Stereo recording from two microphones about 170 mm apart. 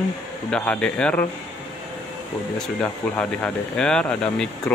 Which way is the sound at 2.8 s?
5° left (ahead or behind).